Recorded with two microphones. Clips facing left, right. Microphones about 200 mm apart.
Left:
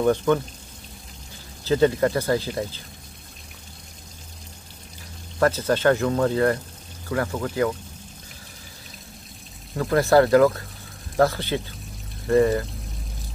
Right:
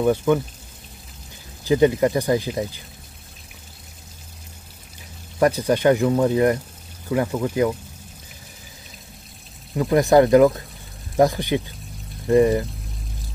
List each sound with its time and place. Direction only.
0.0 s speech: 10° right (ahead or behind)
1.6 s speech: 15° right (ahead or behind)
5.4 s speech: 15° right (ahead or behind)
9.8 s speech: 15° right (ahead or behind)